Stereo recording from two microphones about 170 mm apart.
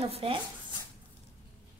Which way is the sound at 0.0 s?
35° right (ahead or behind).